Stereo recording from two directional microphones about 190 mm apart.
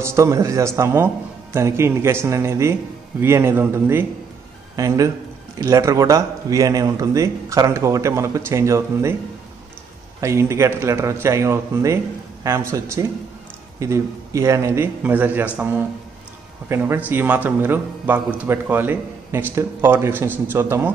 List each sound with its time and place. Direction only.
0.0 s speech: 15° right (ahead or behind)
10.2 s speech: 15° right (ahead or behind)